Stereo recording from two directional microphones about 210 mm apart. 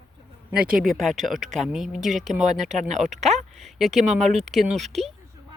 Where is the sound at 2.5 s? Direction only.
35° right (ahead or behind).